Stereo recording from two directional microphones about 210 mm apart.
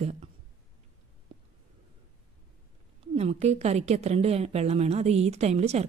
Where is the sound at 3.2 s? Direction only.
30° right (ahead or behind).